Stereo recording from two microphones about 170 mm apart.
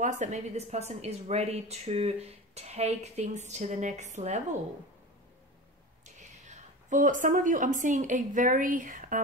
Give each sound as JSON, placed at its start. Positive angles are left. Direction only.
{"t": 0.0, "sound": "a woman's voice", "side_deg": -45}
{"t": 6.5, "sound": "a woman's voice", "side_deg": -50}